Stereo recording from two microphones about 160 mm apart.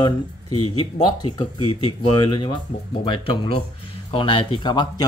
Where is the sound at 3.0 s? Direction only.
30° left (ahead or behind).